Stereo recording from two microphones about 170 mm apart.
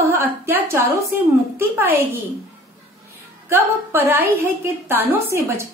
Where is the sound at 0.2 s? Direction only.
15° right (ahead or behind).